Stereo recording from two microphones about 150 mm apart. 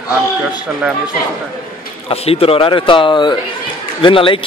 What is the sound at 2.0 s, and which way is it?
A man's voice, 40° left (ahead or behind).